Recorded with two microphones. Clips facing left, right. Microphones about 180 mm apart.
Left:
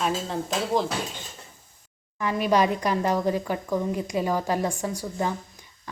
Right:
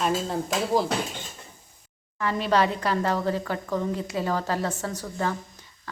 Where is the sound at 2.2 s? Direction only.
15° left (ahead or behind).